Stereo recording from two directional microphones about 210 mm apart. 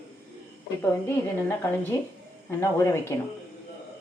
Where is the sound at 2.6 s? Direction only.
15° left (ahead or behind).